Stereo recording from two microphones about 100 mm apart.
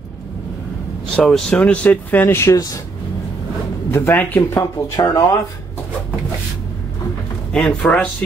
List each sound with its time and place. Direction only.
1.1 s speech: 5° left (ahead or behind); by 2.8 s 35° left (ahead or behind)
3.9 s speech: 20° left (ahead or behind)
4.4 s speech: 35° left (ahead or behind)
7.5 s speech: 10° left (ahead or behind)